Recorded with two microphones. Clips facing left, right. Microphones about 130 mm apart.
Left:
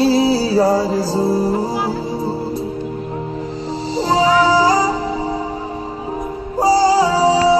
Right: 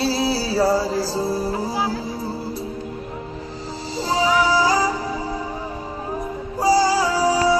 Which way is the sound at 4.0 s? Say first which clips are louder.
Left 5 dB; 30° left (ahead or behind).